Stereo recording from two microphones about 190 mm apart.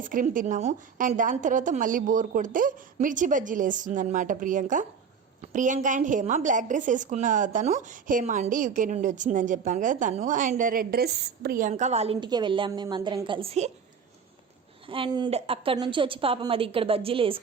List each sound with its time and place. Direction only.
0.0 s a woman's voice: 45° right (ahead or behind)
14.8 s a woman's voice: 25° right (ahead or behind)